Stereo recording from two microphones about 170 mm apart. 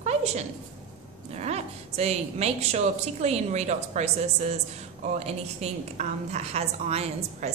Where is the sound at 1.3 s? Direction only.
40° right (ahead or behind).